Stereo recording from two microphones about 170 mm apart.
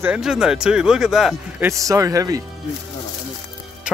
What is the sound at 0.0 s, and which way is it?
Speech, 5° right (ahead or behind).